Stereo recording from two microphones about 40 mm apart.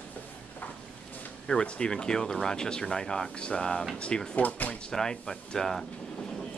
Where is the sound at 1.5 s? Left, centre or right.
Left.